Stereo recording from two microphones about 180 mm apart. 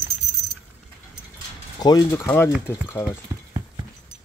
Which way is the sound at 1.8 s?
20° left (ahead or behind).